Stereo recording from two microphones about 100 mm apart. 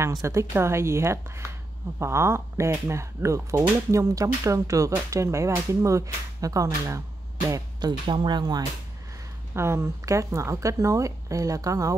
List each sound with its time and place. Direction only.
0.1 s speech: 35° right (ahead or behind)
7.8 s speech: 50° right (ahead or behind)
9.6 s speech: 25° right (ahead or behind)